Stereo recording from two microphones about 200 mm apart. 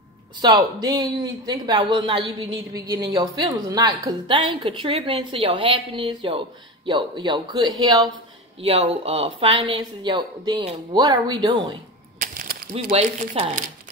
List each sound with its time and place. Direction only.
0.4 s a woman's voice: 20° right (ahead or behind)
8.5 s a woman's voice: 30° right (ahead or behind)
12.2 s a sound: 45° right (ahead or behind)
12.9 s a woman's voice: 30° right (ahead or behind)